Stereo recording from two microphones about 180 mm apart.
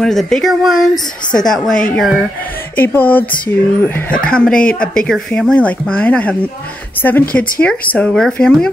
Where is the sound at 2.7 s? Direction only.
10° left (ahead or behind).